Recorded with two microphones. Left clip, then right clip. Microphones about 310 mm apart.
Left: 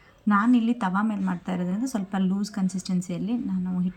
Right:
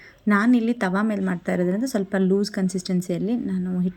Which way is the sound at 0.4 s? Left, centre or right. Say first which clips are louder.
Right 2 dB; left.